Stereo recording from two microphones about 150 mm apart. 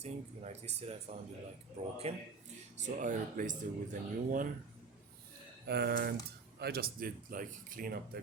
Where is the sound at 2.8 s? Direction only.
60° right (ahead or behind).